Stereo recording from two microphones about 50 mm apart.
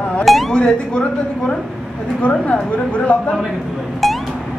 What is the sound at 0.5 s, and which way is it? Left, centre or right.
A woman's voice, centre.